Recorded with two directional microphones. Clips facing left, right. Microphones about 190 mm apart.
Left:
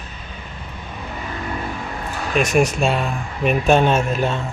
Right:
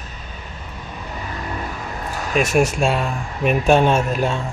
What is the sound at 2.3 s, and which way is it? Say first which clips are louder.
Speech: even; 5° right (ahead or behind).